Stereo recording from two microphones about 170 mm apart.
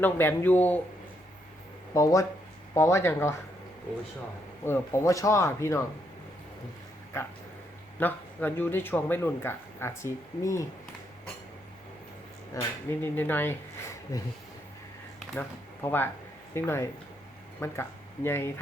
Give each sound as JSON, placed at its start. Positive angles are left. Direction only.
{"t": 0.0, "sound": "speech", "side_deg": 10}
{"t": 1.9, "sound": "speech", "side_deg": 20}
{"t": 4.6, "sound": "speech", "side_deg": 15}
{"t": 7.9, "sound": "speech", "side_deg": 10}
{"t": 12.5, "sound": "speech", "side_deg": 20}
{"t": 15.4, "sound": "speech", "side_deg": 10}